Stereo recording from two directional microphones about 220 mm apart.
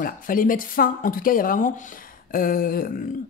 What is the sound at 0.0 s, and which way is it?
Speech, 40° left (ahead or behind).